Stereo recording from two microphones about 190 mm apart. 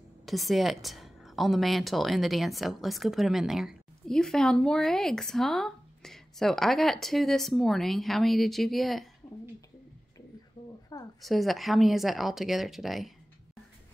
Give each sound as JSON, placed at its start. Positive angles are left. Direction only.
{"t": 0.2, "sound": "a woman's voice", "side_deg": 0}
{"t": 10.6, "sound": "a sound", "side_deg": 25}
{"t": 11.1, "sound": "a woman's voice", "side_deg": 0}